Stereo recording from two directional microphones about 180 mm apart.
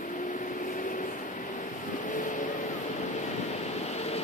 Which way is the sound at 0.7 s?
45° left (ahead or behind).